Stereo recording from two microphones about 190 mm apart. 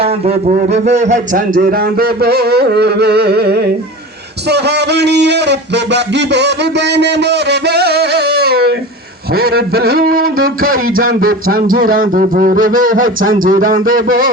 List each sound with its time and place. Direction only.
0.0 s a man's voice: 30° right (ahead or behind); by 14.3 s 50° right (ahead or behind)